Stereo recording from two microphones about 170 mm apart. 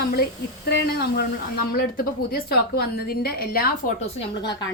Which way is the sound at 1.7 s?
60° left (ahead or behind).